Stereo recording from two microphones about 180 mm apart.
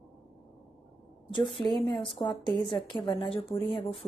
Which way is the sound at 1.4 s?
Centre (ahead or behind).